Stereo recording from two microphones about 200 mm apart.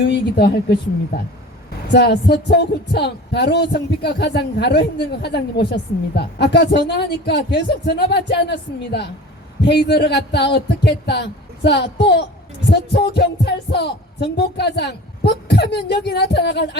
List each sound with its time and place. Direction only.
0.0 s speech: 55° left (ahead or behind)
1.9 s speech: 55° left (ahead or behind)